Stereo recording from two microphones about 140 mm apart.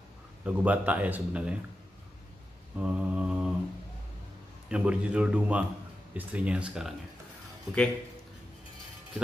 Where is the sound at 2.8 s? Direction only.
5° right (ahead or behind).